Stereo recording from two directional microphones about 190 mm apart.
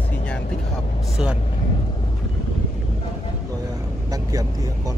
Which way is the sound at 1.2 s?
5° right (ahead or behind).